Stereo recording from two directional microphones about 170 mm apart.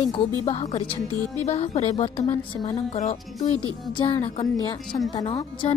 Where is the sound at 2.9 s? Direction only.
45° left (ahead or behind).